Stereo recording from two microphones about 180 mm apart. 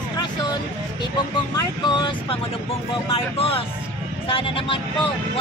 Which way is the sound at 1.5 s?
25° left (ahead or behind).